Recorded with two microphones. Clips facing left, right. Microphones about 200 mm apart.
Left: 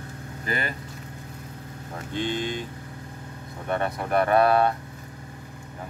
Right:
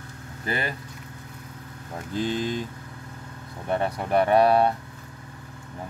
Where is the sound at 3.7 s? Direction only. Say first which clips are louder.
Right 1 dB; 25° right (ahead or behind).